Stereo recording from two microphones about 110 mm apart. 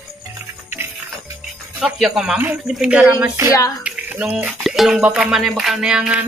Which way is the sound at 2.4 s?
15° right (ahead or behind).